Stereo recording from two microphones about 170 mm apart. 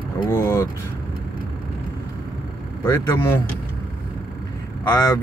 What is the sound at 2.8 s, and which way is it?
Speech, 15° left (ahead or behind).